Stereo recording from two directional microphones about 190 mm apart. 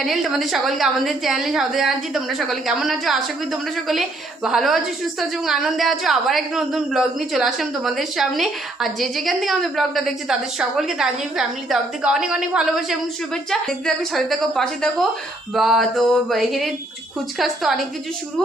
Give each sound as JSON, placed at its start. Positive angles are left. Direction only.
{"t": 0.0, "sound": "a woman's voice", "side_deg": 0}